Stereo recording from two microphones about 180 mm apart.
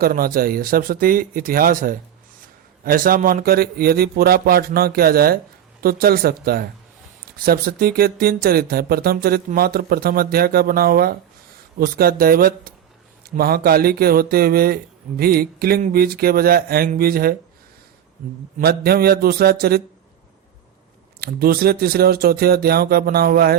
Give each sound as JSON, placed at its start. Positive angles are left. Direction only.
{"t": 0.0, "sound": "speech", "side_deg": -55}
{"t": 18.6, "sound": "speech", "side_deg": -60}
{"t": 21.2, "sound": "speech", "side_deg": -55}